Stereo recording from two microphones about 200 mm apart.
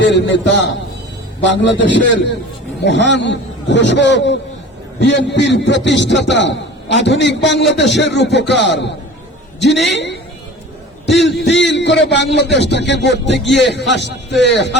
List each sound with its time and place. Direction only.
0.0 s a man's voice: 65° left (ahead or behind)
11.2 s a man's voice: 60° left (ahead or behind)